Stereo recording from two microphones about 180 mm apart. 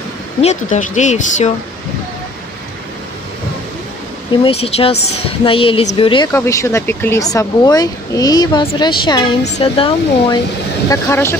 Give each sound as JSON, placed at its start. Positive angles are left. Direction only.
{"t": 0.4, "sound": "a woman's voice", "side_deg": 40}
{"t": 4.3, "sound": "a woman's voice", "side_deg": 35}
{"t": 6.3, "sound": "speech", "side_deg": 15}
{"t": 10.9, "sound": "speech", "side_deg": 15}